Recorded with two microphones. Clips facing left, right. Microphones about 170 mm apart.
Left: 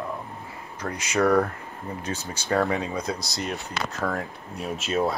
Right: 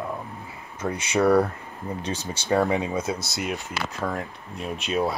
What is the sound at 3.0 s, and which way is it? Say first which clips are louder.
Speech: right 1 dB; 5° right (ahead or behind).